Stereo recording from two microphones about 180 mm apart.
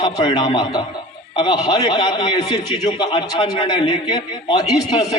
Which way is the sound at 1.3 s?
25° left (ahead or behind).